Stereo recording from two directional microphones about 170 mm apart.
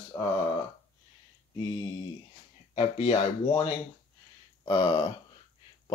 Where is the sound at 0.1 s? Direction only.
20° left (ahead or behind).